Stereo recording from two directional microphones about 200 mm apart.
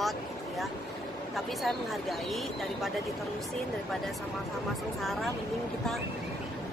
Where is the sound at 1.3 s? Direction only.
Centre (ahead or behind).